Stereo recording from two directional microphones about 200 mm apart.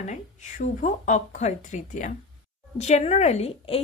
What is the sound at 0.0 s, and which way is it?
Speech, 35° left (ahead or behind).